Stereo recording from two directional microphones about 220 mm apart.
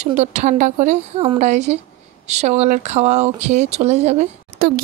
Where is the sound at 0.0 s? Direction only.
35° right (ahead or behind).